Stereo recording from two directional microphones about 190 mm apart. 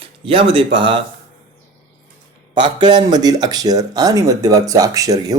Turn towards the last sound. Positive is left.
turn(degrees=-20)  # may be behind; listen again after turning